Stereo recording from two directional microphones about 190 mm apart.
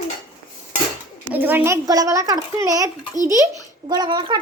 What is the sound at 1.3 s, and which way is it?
A child's voice, 10° right (ahead or behind).